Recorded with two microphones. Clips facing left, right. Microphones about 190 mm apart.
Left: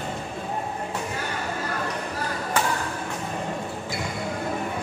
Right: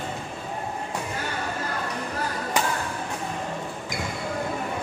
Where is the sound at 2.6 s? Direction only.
15° right (ahead or behind).